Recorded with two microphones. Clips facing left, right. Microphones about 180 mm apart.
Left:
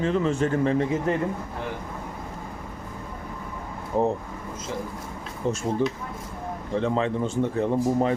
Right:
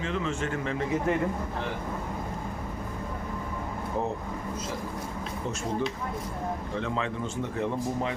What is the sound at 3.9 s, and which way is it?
Speech, 40° left (ahead or behind).